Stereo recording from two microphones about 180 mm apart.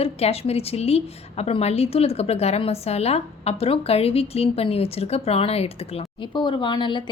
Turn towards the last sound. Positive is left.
turn(degrees=25)  # may be behind; listen again after turning